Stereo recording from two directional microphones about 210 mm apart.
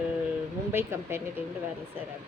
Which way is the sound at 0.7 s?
10° right (ahead or behind).